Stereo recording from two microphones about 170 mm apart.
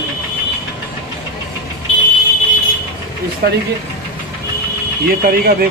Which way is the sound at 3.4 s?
75° right (ahead or behind).